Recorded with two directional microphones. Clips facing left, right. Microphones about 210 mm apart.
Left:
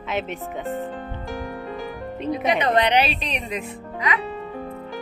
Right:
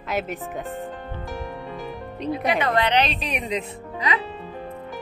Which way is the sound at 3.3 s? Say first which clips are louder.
Right 2 dB; 20° right (ahead or behind).